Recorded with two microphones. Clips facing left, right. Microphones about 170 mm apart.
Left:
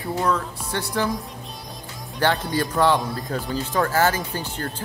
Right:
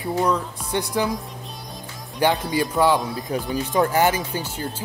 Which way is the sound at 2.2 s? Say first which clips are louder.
Right 2 dB; 15° right (ahead or behind).